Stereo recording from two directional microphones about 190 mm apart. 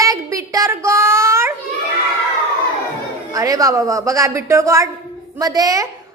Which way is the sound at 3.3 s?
15° right (ahead or behind).